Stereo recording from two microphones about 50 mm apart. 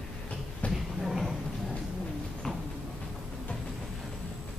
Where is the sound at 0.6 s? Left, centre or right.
Left.